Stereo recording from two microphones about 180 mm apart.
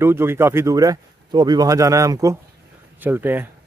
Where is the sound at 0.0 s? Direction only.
15° right (ahead or behind).